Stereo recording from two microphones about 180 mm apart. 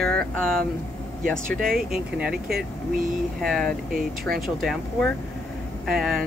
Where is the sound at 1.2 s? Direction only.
5° left (ahead or behind).